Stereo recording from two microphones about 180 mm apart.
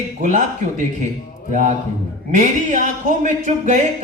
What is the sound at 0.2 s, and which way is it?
Speech, 45° right (ahead or behind).